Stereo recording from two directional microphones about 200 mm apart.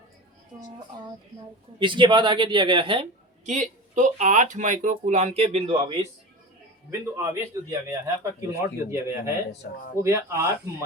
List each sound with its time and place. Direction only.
1.8 s a woman's voice: 25° right (ahead or behind)
7.2 s speech: 15° right (ahead or behind)